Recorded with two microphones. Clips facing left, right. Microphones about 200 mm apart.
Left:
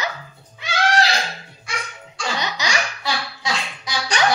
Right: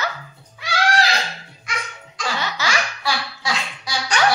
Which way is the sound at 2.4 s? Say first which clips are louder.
Right 1 dB; 20° left (ahead or behind).